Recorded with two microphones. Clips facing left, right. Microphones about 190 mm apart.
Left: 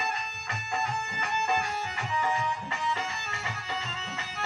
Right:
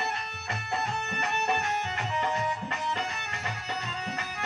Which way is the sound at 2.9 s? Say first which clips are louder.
Right 1 dB; 15° right (ahead or behind).